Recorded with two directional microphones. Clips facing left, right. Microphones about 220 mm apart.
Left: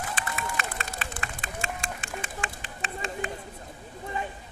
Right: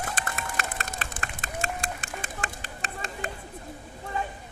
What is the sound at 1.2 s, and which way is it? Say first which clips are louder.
Run: even; 20° right (ahead or behind).